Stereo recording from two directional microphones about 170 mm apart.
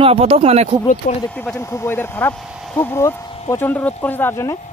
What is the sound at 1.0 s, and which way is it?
Speech, 55° left (ahead or behind).